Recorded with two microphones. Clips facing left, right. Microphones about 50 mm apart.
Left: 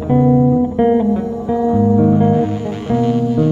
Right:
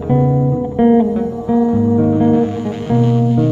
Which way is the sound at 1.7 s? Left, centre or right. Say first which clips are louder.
Left 1 dB; right.